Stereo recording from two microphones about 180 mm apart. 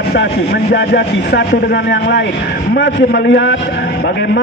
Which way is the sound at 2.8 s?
70° left (ahead or behind).